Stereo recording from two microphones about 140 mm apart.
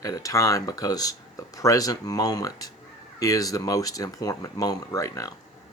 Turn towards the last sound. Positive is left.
turn(degrees=25)  # may be behind; listen again after turning